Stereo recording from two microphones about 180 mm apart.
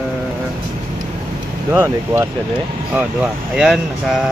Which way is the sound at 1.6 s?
15° right (ahead or behind).